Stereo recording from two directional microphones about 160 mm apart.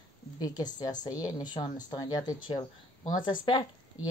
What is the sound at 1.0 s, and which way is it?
Speech, 25° left (ahead or behind).